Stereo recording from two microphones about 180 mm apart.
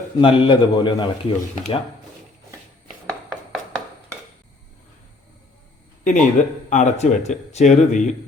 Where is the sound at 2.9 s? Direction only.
Centre (ahead or behind).